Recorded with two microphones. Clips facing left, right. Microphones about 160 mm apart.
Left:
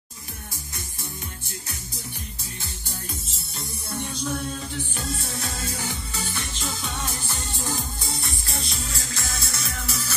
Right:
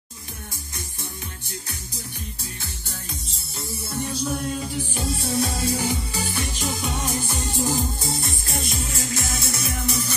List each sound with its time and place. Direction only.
3.3 s music: centre (ahead or behind); by 9.6 s 20° right (ahead or behind)
9.8 s music: centre (ahead or behind)